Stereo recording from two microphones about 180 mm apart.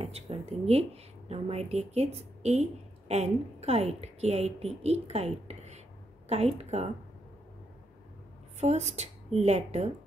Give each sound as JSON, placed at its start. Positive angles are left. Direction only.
{"t": 0.0, "sound": "a woman's voice", "side_deg": -35}
{"t": 8.5, "sound": "a woman's voice", "side_deg": -35}